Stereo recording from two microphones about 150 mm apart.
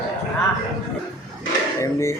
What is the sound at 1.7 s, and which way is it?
Speech, 20° left (ahead or behind).